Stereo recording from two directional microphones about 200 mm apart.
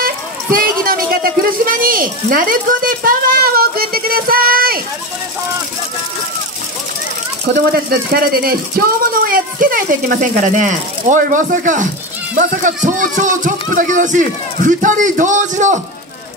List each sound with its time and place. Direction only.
0.0 s speech: 45° right (ahead or behind)
7.5 s a man's voice: 50° right (ahead or behind)